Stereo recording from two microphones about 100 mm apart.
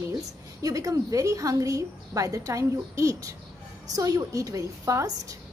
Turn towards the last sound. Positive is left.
turn(degrees=-35)  # may be behind; listen again after turning